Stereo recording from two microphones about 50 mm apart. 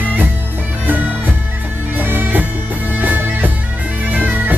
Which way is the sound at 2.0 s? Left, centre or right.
Right.